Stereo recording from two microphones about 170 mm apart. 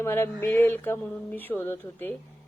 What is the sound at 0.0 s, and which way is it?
Speech, 15° left (ahead or behind).